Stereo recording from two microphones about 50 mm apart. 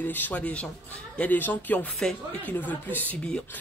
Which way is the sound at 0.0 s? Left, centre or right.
Left.